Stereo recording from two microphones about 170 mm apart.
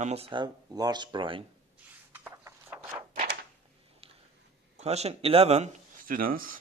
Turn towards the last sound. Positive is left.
turn(degrees=-55)  # may be behind; listen again after turning